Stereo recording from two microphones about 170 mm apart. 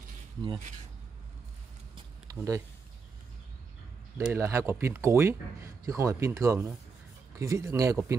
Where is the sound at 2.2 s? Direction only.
20° right (ahead or behind).